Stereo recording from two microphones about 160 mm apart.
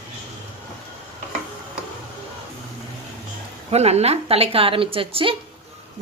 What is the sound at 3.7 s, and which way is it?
Speech, 40° right (ahead or behind).